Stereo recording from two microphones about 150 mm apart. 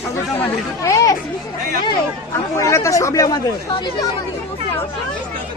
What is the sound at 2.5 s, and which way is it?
Speech, 20° left (ahead or behind).